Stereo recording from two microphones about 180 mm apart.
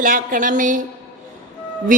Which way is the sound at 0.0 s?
50° right (ahead or behind).